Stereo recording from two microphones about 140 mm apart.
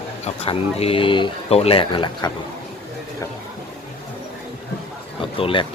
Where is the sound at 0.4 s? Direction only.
45° left (ahead or behind).